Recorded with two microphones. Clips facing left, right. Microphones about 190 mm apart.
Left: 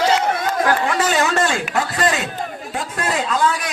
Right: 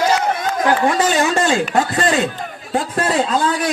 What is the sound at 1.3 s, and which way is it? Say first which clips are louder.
A man's voice: right 3 dB; 20° right (ahead or behind).